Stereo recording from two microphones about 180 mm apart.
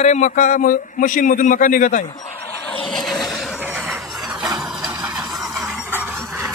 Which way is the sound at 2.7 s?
Centre (ahead or behind).